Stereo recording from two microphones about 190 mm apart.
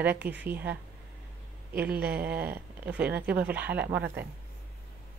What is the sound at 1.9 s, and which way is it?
Speech, 55° right (ahead or behind).